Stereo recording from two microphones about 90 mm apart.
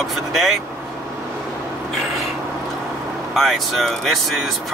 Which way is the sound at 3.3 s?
Centre (ahead or behind).